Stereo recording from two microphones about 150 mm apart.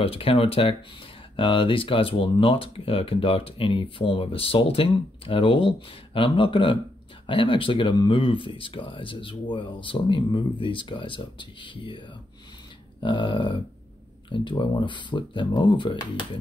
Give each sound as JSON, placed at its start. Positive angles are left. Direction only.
{"t": 0.0, "sound": "speech", "side_deg": 40}